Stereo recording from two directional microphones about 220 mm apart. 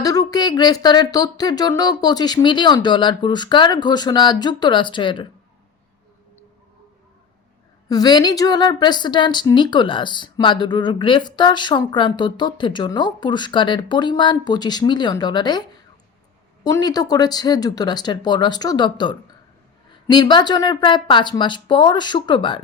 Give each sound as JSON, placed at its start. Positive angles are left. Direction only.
{"t": 0.0, "sound": "a woman's voice", "side_deg": 15}
{"t": 7.9, "sound": "a woman's voice", "side_deg": 20}
{"t": 16.6, "sound": "a woman's voice", "side_deg": 15}